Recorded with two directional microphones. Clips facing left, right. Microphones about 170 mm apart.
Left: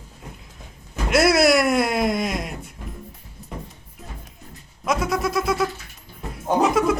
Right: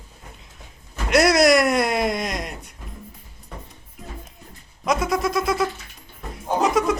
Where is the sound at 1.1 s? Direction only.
Centre (ahead or behind).